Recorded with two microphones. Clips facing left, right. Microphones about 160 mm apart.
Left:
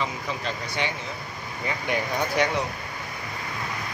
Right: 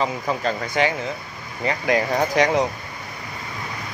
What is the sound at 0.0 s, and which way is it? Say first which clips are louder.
Speech: right 7 dB; 40° right (ahead or behind).